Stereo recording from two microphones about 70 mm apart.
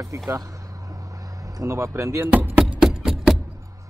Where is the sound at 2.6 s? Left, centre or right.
Centre.